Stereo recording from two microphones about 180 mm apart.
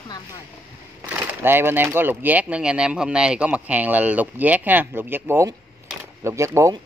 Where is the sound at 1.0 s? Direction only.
10° right (ahead or behind).